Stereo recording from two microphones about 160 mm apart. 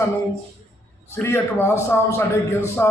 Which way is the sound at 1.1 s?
15° left (ahead or behind).